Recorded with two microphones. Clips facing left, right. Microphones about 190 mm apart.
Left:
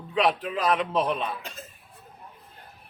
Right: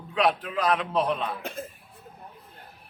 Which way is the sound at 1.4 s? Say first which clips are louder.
Right 6 dB; 55° right (ahead or behind).